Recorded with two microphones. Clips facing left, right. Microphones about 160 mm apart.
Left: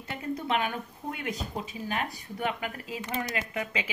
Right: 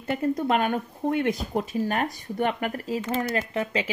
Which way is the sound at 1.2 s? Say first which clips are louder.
Right 8 dB; 65° right (ahead or behind).